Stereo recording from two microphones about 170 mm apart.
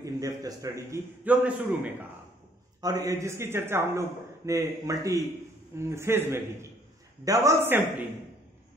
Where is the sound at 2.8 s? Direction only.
20° right (ahead or behind).